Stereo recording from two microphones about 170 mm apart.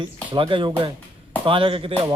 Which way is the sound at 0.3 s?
30° right (ahead or behind).